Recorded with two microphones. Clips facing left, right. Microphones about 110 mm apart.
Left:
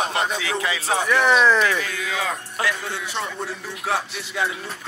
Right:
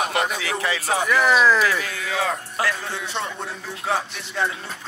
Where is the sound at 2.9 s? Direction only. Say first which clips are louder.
Even; centre (ahead or behind).